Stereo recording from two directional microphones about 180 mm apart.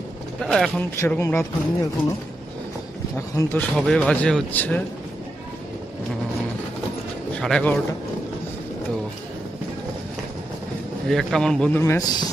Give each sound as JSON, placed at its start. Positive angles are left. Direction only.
{"t": 0.4, "sound": "speech", "side_deg": 0}
{"t": 0.9, "sound": "speech", "side_deg": 15}
{"t": 3.4, "sound": "speech", "side_deg": 20}
{"t": 3.7, "sound": "speech", "side_deg": 5}
{"t": 7.3, "sound": "speech", "side_deg": 5}
{"t": 11.1, "sound": "speech", "side_deg": 0}
{"t": 11.8, "sound": "speech", "side_deg": 15}